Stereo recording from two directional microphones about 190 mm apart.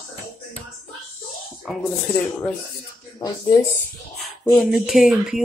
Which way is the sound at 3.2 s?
20° left (ahead or behind).